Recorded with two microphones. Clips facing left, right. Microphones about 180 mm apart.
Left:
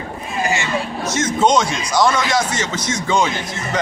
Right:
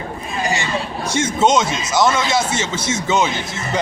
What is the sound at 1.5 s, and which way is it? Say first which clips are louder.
Speech: even; 25° right (ahead or behind).